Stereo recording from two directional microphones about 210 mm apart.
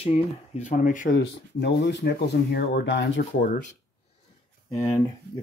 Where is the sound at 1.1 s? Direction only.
55° left (ahead or behind).